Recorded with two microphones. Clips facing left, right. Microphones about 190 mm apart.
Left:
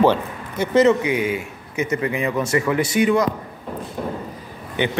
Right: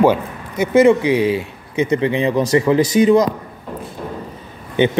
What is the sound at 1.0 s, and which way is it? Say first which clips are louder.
A man's voice: right 6 dB; 30° right (ahead or behind).